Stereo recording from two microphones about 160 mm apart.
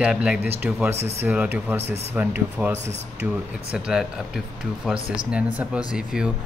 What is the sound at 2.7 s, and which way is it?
Speech, 45° right (ahead or behind).